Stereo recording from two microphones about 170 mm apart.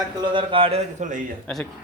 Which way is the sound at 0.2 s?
30° right (ahead or behind).